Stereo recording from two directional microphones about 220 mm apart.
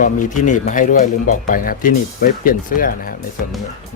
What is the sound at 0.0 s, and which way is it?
Speech, 35° left (ahead or behind).